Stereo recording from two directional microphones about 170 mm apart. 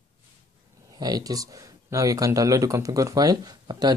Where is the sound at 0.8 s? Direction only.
20° right (ahead or behind).